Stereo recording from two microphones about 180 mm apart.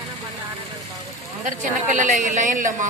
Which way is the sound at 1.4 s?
45° right (ahead or behind).